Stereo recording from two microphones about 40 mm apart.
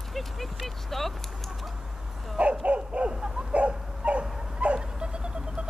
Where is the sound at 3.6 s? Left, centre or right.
Right.